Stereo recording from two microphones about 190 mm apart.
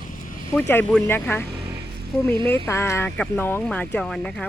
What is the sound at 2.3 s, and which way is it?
Speech, 25° right (ahead or behind).